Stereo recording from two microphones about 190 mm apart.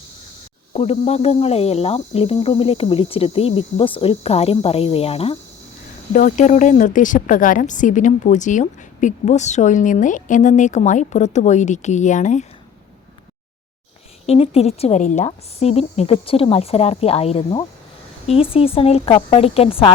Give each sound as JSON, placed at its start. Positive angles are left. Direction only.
{"t": 0.7, "sound": "a woman's voice", "side_deg": 35}
{"t": 6.1, "sound": "a woman's voice", "side_deg": 40}
{"t": 14.3, "sound": "a woman's voice", "side_deg": 30}